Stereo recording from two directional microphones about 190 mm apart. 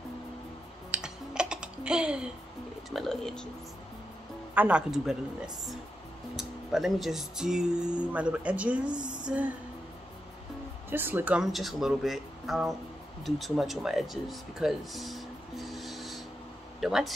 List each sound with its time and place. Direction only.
0.9 s music: 5° right (ahead or behind)
2.9 s speech: centre (ahead or behind)
4.6 s speech: 5° right (ahead or behind)
6.3 s speech: centre (ahead or behind)
8.8 s a sound: 25° right (ahead or behind)
10.9 s speech: 10° right (ahead or behind)